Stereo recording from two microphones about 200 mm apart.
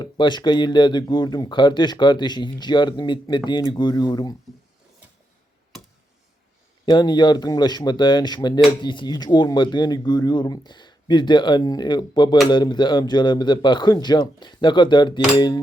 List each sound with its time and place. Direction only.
0.0 s speech: 20° left (ahead or behind)
6.8 s speech: 20° left (ahead or behind)